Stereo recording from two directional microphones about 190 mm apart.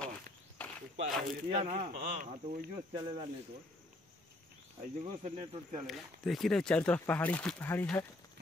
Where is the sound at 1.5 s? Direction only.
35° right (ahead or behind).